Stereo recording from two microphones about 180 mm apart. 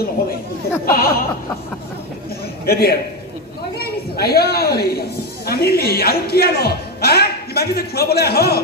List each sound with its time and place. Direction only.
0.9 s speech: 55° left (ahead or behind)
2.6 s a man's voice: 60° left (ahead or behind)